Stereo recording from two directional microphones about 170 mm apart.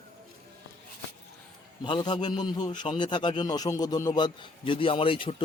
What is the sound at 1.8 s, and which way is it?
A man's voice, 25° left (ahead or behind).